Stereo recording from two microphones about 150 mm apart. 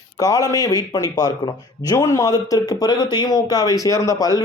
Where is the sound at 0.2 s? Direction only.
25° left (ahead or behind).